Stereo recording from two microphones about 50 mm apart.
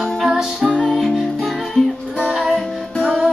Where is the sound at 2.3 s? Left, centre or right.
Centre.